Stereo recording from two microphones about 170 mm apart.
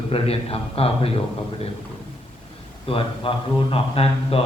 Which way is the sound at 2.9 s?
30° left (ahead or behind).